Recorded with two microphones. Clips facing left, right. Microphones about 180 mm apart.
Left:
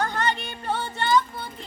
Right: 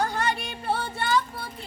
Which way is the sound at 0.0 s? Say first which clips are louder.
Left 1 dB; 10° right (ahead or behind).